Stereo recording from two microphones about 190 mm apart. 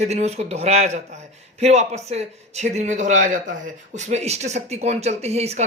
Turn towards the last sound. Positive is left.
turn(degrees=-35)  # may be behind; listen again after turning